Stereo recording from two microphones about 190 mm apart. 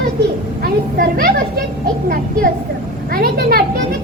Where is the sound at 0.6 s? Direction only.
50° right (ahead or behind).